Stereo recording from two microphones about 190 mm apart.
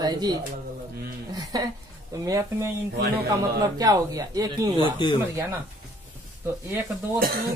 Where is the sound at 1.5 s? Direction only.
20° right (ahead or behind).